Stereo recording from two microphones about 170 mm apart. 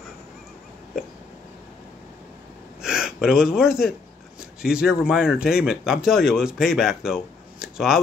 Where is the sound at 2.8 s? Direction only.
5° right (ahead or behind).